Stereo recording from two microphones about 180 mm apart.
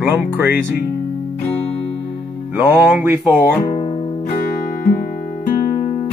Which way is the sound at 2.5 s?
10° right (ahead or behind).